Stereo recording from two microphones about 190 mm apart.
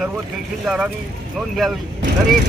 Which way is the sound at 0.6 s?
5° right (ahead or behind).